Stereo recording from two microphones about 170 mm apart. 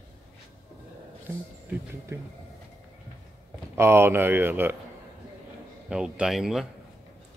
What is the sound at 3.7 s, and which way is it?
Speech, 15° right (ahead or behind).